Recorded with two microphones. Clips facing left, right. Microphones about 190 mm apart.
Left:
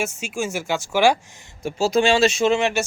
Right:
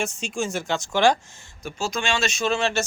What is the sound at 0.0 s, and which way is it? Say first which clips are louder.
Speech: left 1 dB; 5° left (ahead or behind).